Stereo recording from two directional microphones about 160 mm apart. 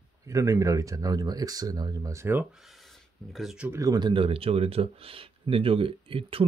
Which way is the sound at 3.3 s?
5° right (ahead or behind).